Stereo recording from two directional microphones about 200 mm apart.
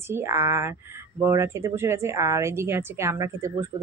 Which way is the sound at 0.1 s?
15° right (ahead or behind).